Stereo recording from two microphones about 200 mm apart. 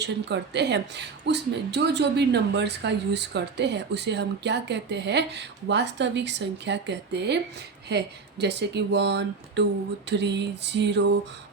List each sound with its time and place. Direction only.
0.0 s a woman's voice: 60° right (ahead or behind)